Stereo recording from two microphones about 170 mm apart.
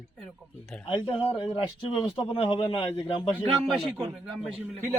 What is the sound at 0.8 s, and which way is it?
A man's voice, 35° left (ahead or behind).